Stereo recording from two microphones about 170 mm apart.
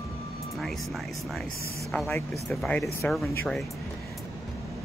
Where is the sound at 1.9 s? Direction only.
10° left (ahead or behind).